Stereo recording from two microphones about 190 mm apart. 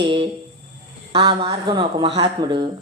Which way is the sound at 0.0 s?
20° right (ahead or behind).